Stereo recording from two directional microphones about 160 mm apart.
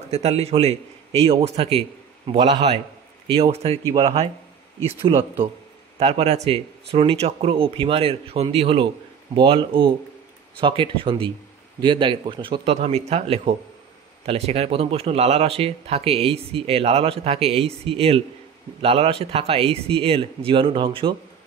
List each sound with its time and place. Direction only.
0.1 s speech: 40° right (ahead or behind)
5.9 s speech: 40° right (ahead or behind)